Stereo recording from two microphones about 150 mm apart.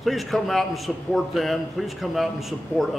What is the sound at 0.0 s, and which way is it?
Speech, centre (ahead or behind).